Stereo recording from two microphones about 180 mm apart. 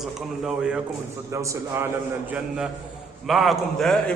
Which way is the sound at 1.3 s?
15° right (ahead or behind).